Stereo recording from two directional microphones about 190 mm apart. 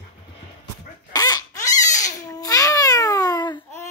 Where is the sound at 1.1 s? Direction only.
20° left (ahead or behind).